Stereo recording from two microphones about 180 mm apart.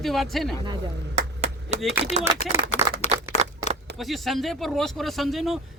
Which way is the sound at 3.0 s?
40° left (ahead or behind).